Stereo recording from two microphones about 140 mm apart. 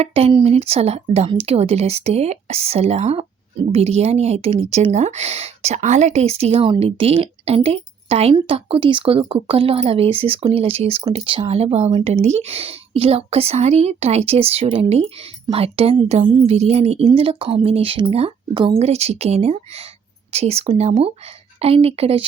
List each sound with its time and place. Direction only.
0.0 s a woman's voice: 45° right (ahead or behind)
11.9 s speech: 35° right (ahead or behind)
12.1 s a woman's voice: 50° right (ahead or behind)